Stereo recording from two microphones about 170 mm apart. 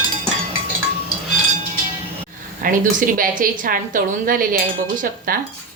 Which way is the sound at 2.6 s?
55° right (ahead or behind).